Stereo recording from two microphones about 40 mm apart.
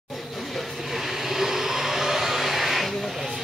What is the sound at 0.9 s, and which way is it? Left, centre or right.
Vehicle, centre.